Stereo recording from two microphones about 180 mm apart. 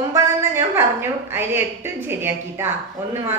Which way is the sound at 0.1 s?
15° right (ahead or behind).